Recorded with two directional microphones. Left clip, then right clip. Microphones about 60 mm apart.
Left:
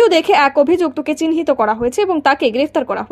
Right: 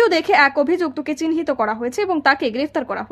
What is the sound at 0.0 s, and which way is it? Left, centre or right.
A woman's voice, left.